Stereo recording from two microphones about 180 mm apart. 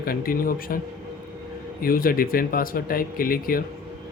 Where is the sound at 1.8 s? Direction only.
55° left (ahead or behind).